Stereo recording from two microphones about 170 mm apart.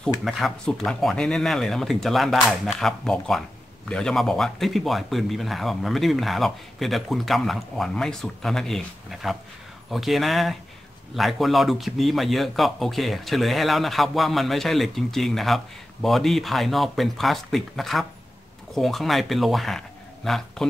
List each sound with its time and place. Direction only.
0.0 s a man's voice: centre (ahead or behind)